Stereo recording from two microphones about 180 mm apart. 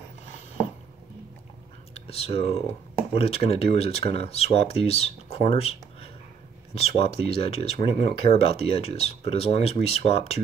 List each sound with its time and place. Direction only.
2.0 s speech: 35° left (ahead or behind)